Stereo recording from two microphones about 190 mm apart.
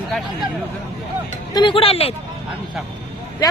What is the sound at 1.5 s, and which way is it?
Speech, 25° left (ahead or behind).